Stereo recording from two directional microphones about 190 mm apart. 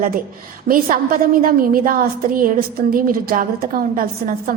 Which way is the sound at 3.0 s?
50° right (ahead or behind).